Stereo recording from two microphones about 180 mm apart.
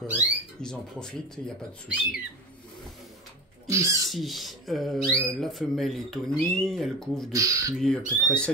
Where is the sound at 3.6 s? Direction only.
20° right (ahead or behind).